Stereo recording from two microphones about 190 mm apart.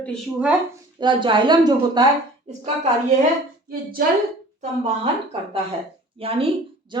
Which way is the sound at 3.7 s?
50° right (ahead or behind).